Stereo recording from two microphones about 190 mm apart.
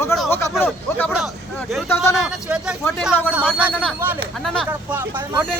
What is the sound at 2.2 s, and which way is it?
Speech, 5° right (ahead or behind).